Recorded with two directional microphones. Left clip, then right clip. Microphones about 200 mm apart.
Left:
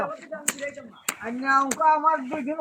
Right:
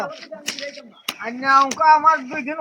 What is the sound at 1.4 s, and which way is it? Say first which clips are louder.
Speech: right 6 dB; 20° right (ahead or behind).